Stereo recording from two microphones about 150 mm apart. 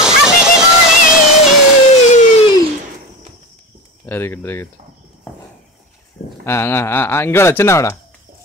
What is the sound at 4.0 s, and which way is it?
Speech, 15° left (ahead or behind).